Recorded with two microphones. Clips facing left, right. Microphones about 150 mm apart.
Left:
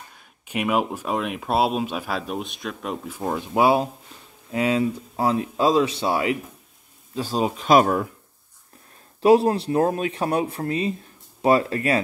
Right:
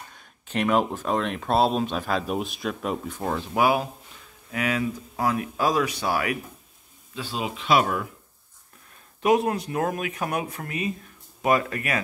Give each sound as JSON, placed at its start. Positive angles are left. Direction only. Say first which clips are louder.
{"t": 0.5, "sound": "speech", "louder": "even", "side_deg": 10}
{"t": 3.5, "sound": "speech", "louder": "left 4 dB", "side_deg": 30}
{"t": 7.2, "sound": "speech", "louder": "left 7 dB", "side_deg": 40}
{"t": 9.2, "sound": "speech", "louder": "left 5 dB", "side_deg": 30}